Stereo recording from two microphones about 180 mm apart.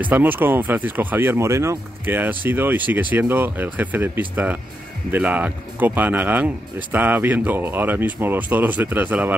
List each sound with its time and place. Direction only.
0.0 s speech: 10° right (ahead or behind)